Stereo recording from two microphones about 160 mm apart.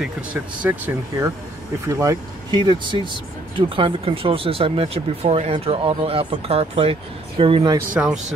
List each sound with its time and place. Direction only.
0.0 s speech: 10° right (ahead or behind); by 7.7 s 35° right (ahead or behind)
7.9 s speech: 5° right (ahead or behind)